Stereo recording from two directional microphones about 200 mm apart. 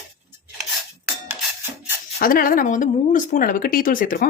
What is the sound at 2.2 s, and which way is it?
Speech, 45° left (ahead or behind).